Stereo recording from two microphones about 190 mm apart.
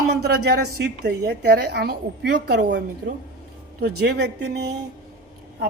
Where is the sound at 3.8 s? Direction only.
55° right (ahead or behind).